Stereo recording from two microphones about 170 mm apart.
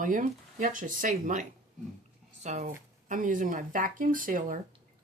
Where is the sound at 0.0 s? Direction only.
50° right (ahead or behind).